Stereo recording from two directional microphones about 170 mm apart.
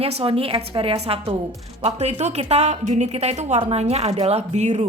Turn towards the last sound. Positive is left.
turn(degrees=-40)  # may be behind; listen again after turning